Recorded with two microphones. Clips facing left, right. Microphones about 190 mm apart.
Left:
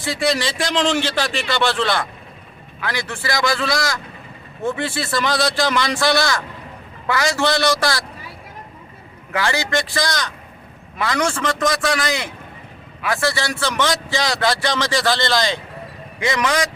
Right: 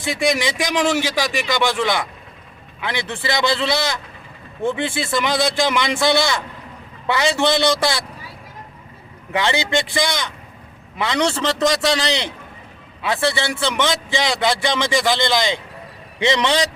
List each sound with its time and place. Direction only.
0.0 s a man's voice: 15° right (ahead or behind)
9.3 s a man's voice: 20° right (ahead or behind)